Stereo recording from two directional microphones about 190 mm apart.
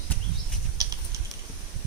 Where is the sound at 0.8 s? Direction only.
20° right (ahead or behind).